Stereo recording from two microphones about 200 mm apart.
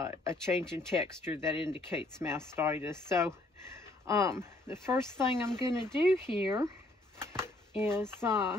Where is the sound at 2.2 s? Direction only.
10° right (ahead or behind).